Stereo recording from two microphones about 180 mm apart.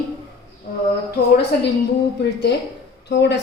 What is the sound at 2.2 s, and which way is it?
A woman's voice, 70° left (ahead or behind).